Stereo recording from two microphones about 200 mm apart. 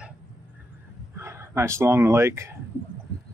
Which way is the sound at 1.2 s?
15° right (ahead or behind).